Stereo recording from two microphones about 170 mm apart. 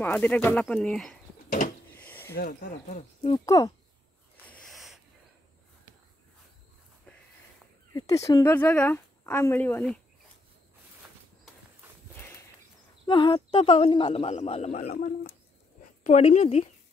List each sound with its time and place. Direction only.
0.0 s a woman's voice: 10° left (ahead or behind)
2.0 s a sound: 10° left (ahead or behind)
2.3 s speech: 60° left (ahead or behind)
3.3 s speech: 20° left (ahead or behind)
4.5 s a sound: 5° left (ahead or behind)
7.1 s a sound: 5° left (ahead or behind)
7.9 s a woman's voice: 25° left (ahead or behind)
13.0 s speech: 30° left (ahead or behind)
14.8 s speech: 55° left (ahead or behind)
15.8 s a woman's voice: 45° left (ahead or behind)